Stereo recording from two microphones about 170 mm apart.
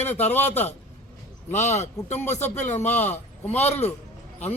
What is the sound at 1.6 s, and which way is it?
Speech, 40° left (ahead or behind).